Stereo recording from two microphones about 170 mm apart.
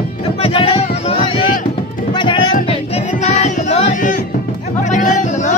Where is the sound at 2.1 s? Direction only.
25° left (ahead or behind).